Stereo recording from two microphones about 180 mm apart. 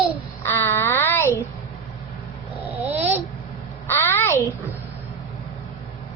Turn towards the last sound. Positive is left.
turn(degrees=15)  # may be behind; listen again after turning